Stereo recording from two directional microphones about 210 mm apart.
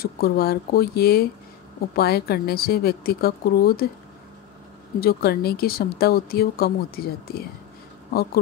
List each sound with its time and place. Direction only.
0.0 s speech: 45° left (ahead or behind)
5.0 s speech: 50° left (ahead or behind)